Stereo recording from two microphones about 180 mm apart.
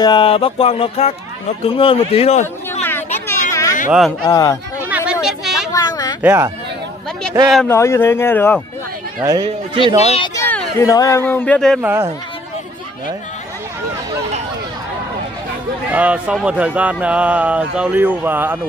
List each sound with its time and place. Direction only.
0.0 s speech: 25° left (ahead or behind)
2.4 s chatter: 10° left (ahead or behind)
4.2 s speech: 20° left (ahead or behind)
4.8 s a sound: 5° right (ahead or behind)
5.7 s a sound: 20° left (ahead or behind)
6.2 s speech: 15° right (ahead or behind)
7.6 s speech: 15° left (ahead or behind)
9.2 s speech: 20° right (ahead or behind)
10.0 s speech: 35° left (ahead or behind)
10.3 s speech: 15° left (ahead or behind)
11.8 s speech: 15° right (ahead or behind)
15.9 s speech: 10° right (ahead or behind)